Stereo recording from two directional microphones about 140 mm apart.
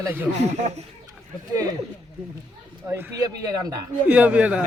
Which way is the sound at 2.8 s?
15° right (ahead or behind).